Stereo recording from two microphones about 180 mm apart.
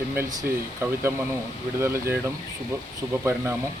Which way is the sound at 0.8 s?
15° right (ahead or behind).